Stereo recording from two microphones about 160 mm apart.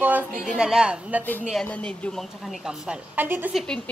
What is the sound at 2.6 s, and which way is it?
Speech, 10° right (ahead or behind).